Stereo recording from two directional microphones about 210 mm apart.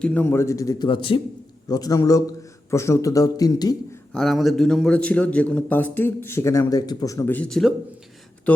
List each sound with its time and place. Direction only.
0.0 s a man's voice: 10° left (ahead or behind)
4.1 s a man's voice: 5° left (ahead or behind)